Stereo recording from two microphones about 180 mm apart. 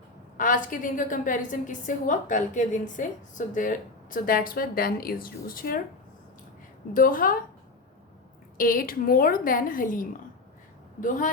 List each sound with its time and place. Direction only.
0.3 s a woman's voice: 45° left (ahead or behind)
6.9 s a woman's voice: 50° left (ahead or behind)
8.5 s a woman's voice: 50° left (ahead or behind)